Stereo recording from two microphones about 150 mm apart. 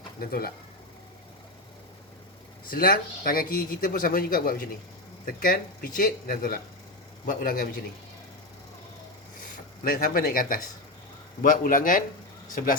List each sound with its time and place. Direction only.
0.2 s speech: 80° left
2.6 s a man's voice: 75° left (ahead or behind)
9.8 s a man's voice: 70° left (ahead or behind)